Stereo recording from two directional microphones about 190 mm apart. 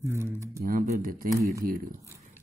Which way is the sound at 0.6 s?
50° right (ahead or behind).